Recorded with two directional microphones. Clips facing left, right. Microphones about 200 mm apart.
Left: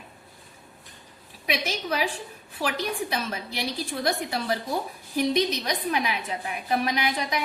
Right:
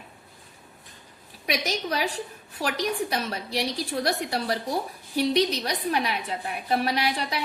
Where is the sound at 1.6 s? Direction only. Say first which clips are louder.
Even; 40° right (ahead or behind).